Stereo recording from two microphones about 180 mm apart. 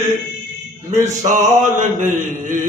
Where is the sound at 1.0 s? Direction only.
45° right (ahead or behind).